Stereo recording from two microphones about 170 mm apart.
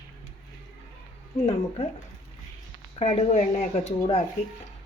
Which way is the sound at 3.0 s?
40° left (ahead or behind).